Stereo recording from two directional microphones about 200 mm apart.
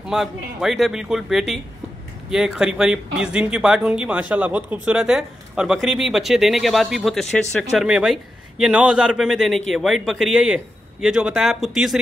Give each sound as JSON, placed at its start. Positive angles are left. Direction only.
{"t": 0.0, "sound": "speech", "side_deg": -5}